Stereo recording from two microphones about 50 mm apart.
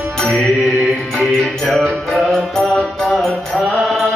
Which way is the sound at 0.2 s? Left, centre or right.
Centre.